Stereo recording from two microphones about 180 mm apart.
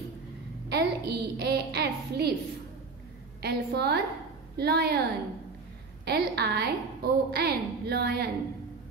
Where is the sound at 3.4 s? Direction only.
65° right (ahead or behind).